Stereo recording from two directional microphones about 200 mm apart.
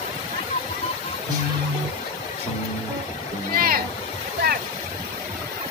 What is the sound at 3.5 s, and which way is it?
Music, 45° right (ahead or behind).